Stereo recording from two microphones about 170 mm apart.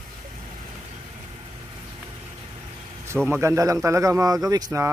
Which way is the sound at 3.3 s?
15° right (ahead or behind).